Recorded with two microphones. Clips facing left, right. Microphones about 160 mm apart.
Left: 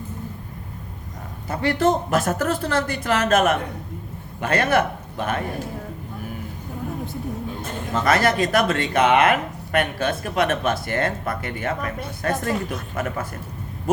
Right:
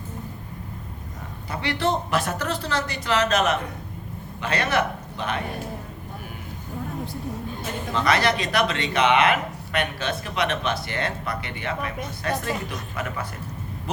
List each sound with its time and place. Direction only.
1.5 s a man's voice: 45° left (ahead or behind)
7.9 s speech: 50° left (ahead or behind)